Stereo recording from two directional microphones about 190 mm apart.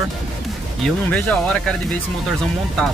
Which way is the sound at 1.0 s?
5° left (ahead or behind).